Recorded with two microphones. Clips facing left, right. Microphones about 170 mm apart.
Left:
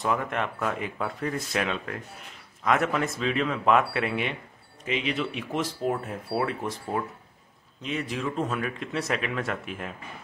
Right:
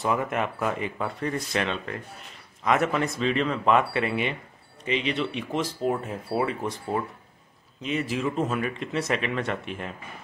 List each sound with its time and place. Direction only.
0.0 s speech: 5° right (ahead or behind)